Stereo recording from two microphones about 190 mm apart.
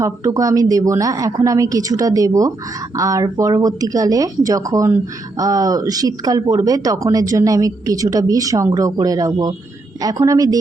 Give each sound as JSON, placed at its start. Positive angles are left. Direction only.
{"t": 0.0, "sound": "a woman's voice", "side_deg": -15}